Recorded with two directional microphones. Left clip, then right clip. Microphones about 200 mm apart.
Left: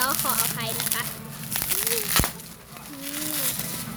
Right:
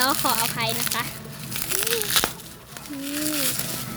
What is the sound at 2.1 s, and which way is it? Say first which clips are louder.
Crumpling: right 2 dB; centre (ahead or behind).